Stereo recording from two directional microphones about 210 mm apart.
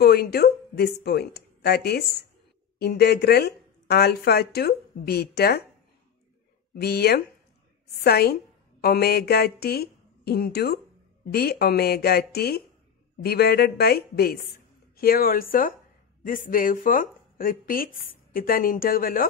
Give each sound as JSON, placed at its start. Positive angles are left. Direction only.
{"t": 0.0, "sound": "speech", "side_deg": 45}
{"t": 6.7, "sound": "a woman's voice", "side_deg": 50}